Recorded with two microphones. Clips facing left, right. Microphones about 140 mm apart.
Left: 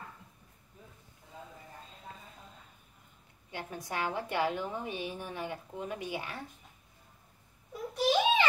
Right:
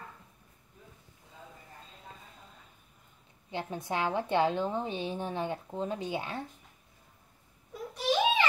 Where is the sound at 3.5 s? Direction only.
25° right (ahead or behind).